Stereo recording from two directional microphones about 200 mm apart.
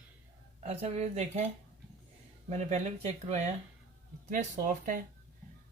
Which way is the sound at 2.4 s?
35° right (ahead or behind).